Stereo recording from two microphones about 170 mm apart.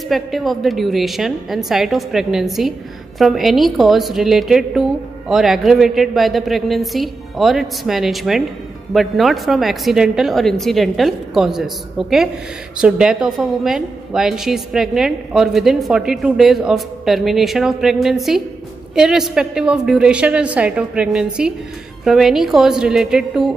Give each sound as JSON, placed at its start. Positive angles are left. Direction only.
{"t": 0.1, "sound": "a woman's voice", "side_deg": 0}